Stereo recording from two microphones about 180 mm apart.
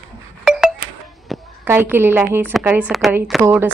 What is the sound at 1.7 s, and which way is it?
A woman's voice, 10° right (ahead or behind).